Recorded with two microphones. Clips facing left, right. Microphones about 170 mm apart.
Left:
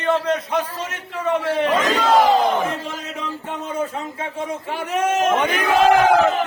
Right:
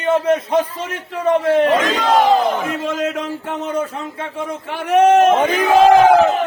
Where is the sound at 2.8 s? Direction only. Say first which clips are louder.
Right 9 dB; 90° right.